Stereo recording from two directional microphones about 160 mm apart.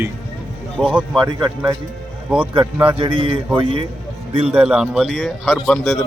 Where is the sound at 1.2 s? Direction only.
30° right (ahead or behind).